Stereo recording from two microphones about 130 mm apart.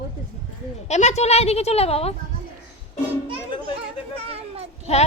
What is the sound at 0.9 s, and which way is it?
A woman's voice, 60° left (ahead or behind).